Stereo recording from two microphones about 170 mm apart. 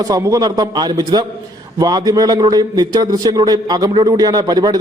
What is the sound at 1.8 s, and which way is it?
A man's voice, 25° right (ahead or behind).